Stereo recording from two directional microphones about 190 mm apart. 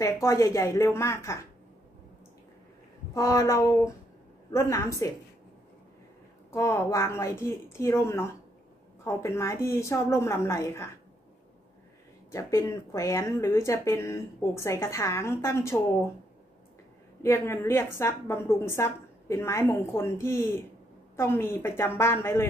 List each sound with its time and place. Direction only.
0.0 s speech: 15° left (ahead or behind)
3.2 s speech: 15° left (ahead or behind)
6.5 s speech: 15° left (ahead or behind)
12.3 s speech: 15° left (ahead or behind)
17.2 s speech: 15° left (ahead or behind)